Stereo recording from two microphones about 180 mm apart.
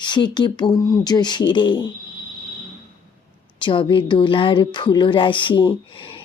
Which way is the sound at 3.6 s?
25° left (ahead or behind).